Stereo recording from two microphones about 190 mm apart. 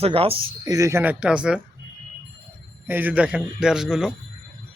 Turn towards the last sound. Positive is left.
turn(degrees=-5)  # may be behind; listen again after turning